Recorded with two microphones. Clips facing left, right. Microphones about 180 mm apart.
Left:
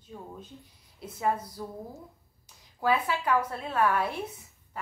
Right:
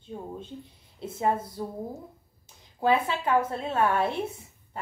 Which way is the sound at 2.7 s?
25° right (ahead or behind).